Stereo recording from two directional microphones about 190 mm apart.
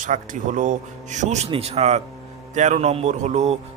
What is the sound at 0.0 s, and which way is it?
Speech, 40° right (ahead or behind).